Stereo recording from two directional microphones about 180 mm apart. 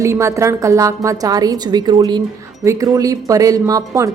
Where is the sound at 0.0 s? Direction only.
15° right (ahead or behind).